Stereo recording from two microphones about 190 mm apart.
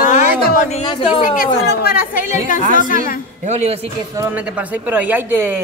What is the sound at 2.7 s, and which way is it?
Speech, 45° left (ahead or behind).